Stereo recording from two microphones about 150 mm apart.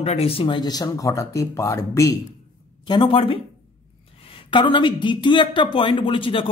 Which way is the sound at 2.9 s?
35° left (ahead or behind).